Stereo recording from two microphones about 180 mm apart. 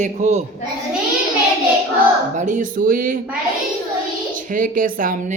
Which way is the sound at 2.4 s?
45° right (ahead or behind).